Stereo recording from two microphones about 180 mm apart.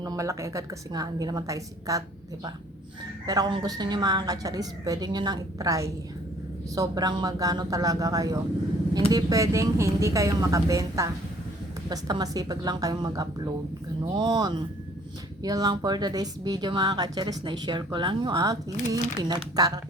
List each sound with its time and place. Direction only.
0.0 s speech: 20° right (ahead or behind)